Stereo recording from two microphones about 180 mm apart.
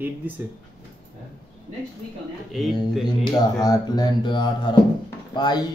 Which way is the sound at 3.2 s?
20° left (ahead or behind).